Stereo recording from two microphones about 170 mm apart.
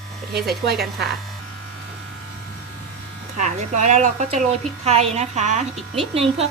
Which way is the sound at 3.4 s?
45° right (ahead or behind).